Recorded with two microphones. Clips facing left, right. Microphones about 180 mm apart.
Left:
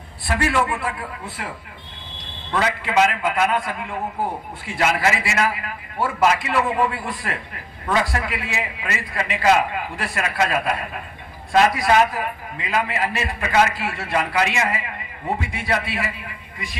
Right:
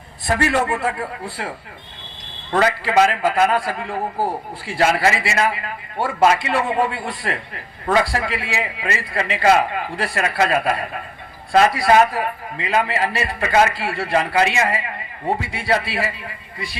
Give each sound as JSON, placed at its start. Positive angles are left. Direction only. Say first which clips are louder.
{"t": 0.3, "sound": "a man's voice", "louder": "right 2 dB", "side_deg": -40}
{"t": 1.0, "sound": "a man's voice", "louder": "right 4 dB", "side_deg": -30}